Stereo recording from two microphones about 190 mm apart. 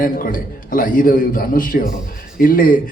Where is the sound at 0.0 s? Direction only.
50° left (ahead or behind).